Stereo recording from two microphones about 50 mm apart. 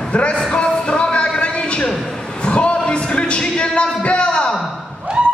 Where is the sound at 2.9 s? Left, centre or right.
Left.